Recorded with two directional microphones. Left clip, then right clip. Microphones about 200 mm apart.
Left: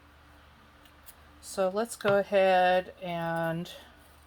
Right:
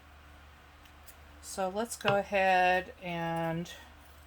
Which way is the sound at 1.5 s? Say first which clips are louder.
Left 5 dB; 35° left (ahead or behind).